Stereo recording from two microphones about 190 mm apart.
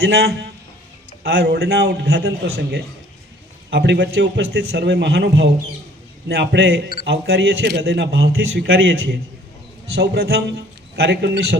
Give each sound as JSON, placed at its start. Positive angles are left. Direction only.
{"t": 0.0, "sound": "a man's voice", "side_deg": -60}
{"t": 10.0, "sound": "a man's voice", "side_deg": -55}